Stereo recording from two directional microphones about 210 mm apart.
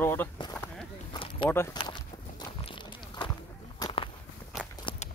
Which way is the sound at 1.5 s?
10° left (ahead or behind).